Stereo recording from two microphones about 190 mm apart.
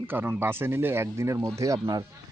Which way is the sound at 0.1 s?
10° right (ahead or behind).